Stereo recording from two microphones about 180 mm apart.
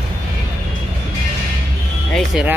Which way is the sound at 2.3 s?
5° right (ahead or behind).